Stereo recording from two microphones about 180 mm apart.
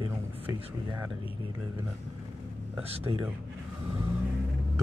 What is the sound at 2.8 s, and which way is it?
Speech, 30° right (ahead or behind).